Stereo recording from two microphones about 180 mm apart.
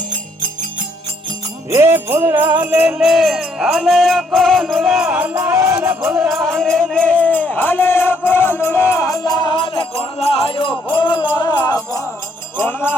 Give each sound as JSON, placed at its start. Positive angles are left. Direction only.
{"t": 1.7, "sound": "music", "side_deg": -15}
{"t": 12.5, "sound": "jingle bell", "side_deg": 10}